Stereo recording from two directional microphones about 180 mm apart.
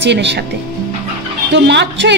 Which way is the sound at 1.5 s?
75° right (ahead or behind).